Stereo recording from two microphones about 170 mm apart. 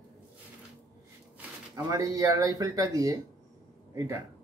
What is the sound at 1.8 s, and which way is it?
Speech, 20° right (ahead or behind).